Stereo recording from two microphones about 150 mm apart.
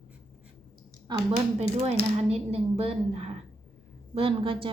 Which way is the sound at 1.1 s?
30° right (ahead or behind).